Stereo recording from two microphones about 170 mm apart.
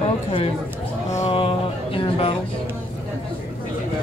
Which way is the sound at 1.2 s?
30° left (ahead or behind).